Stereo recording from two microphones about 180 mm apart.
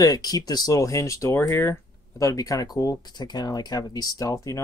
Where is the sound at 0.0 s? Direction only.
20° left (ahead or behind).